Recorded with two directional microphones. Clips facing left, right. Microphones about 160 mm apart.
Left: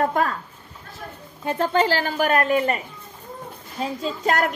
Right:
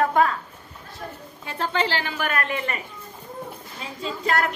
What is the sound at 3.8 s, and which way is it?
Speech, 40° left (ahead or behind).